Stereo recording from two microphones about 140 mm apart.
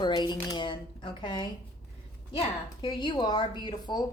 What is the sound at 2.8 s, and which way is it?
Speech, 35° left (ahead or behind).